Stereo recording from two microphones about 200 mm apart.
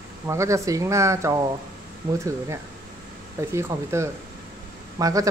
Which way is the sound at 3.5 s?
15° right (ahead or behind).